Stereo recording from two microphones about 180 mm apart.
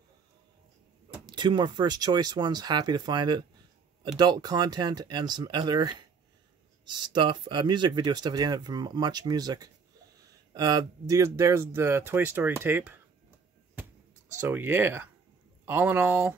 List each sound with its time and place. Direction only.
1.2 s speech: 25° right (ahead or behind)
14.4 s speech: 10° right (ahead or behind)